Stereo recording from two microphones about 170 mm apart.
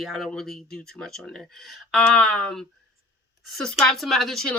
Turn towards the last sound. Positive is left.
turn(degrees=0)  # may be behind; listen again after turning